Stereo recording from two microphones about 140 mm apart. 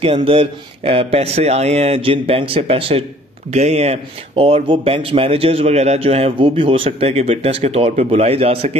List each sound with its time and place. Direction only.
0.0 s a man's voice: 40° right (ahead or behind)